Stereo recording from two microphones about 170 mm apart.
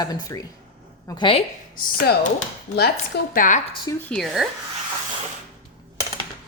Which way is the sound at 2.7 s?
70° left (ahead or behind).